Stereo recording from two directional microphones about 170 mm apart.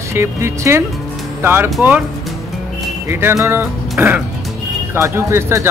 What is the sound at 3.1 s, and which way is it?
A man's voice, 15° right (ahead or behind).